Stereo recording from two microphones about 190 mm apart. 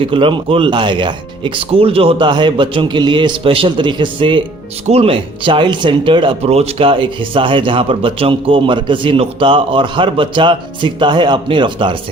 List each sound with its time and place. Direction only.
0.0 s speech: 25° right (ahead or behind)